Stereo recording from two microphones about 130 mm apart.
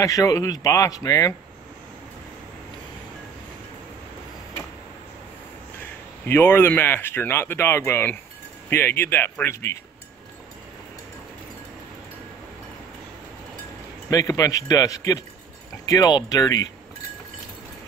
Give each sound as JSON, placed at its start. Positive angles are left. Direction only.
{"t": 0.0, "sound": "a man's voice", "side_deg": 25}
{"t": 6.2, "sound": "speech", "side_deg": 15}
{"t": 14.1, "sound": "a man's voice", "side_deg": 25}